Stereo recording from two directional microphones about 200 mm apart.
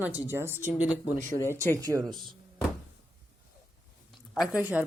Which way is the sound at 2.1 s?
Centre (ahead or behind).